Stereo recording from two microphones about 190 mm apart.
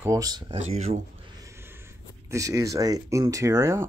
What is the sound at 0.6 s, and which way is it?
Speech, 35° right (ahead or behind).